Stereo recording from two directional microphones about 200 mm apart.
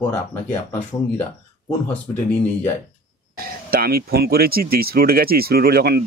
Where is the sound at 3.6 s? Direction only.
50° right (ahead or behind).